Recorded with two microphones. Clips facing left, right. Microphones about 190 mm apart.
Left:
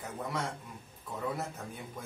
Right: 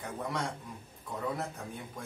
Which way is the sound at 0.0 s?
Centre (ahead or behind).